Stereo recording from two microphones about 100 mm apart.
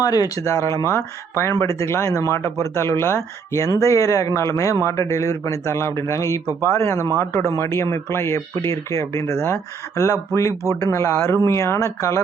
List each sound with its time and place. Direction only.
0.0 s speech: 40° left (ahead or behind)